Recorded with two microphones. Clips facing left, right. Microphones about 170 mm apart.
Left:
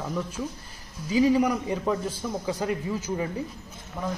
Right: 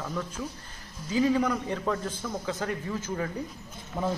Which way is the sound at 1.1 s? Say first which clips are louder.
Left 3 dB; 10° left (ahead or behind).